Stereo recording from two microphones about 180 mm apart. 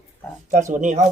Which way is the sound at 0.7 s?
40° right (ahead or behind).